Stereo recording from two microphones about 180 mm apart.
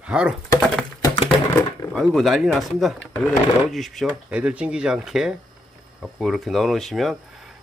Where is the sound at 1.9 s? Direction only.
Centre (ahead or behind).